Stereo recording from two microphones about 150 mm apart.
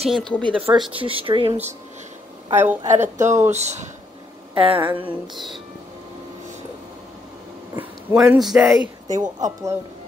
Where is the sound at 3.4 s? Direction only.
50° right (ahead or behind).